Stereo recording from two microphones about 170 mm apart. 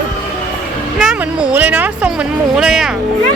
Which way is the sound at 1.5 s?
10° right (ahead or behind).